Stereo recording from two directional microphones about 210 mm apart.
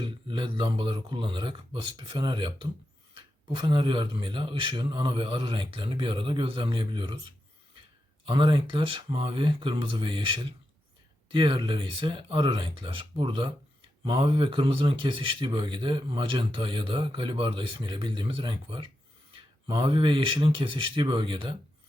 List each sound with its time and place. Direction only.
0.0 s speech: 25° right (ahead or behind)
8.3 s speech: 25° right (ahead or behind)